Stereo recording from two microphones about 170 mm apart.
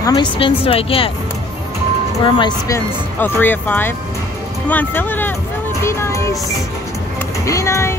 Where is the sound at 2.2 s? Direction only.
25° left (ahead or behind); by 5.3 s 10° left (ahead or behind).